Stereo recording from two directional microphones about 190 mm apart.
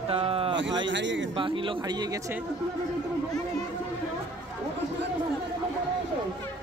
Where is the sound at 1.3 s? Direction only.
25° right (ahead or behind).